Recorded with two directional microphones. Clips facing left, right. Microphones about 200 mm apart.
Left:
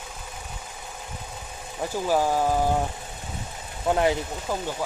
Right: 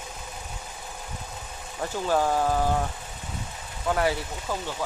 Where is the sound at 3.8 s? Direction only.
20° left (ahead or behind).